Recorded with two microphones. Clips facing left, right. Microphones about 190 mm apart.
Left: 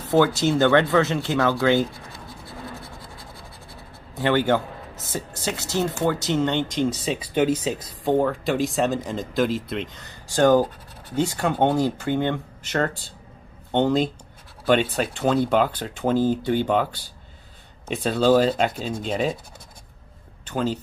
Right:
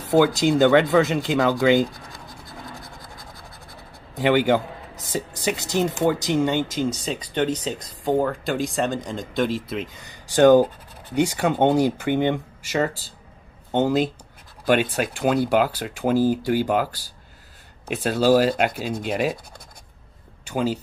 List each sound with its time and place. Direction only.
0.1 s speech: 15° right (ahead or behind)
4.1 s speech: 15° right (ahead or behind)
20.4 s speech: 10° right (ahead or behind)